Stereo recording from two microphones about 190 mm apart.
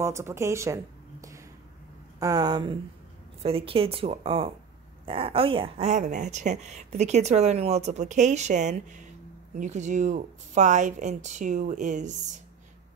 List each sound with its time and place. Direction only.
0.0 s speech: 15° right (ahead or behind)
2.1 s speech: 20° right (ahead or behind); by 12.4 s 40° right (ahead or behind)